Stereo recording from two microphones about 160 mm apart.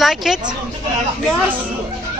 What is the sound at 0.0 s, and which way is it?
Speech, centre (ahead or behind).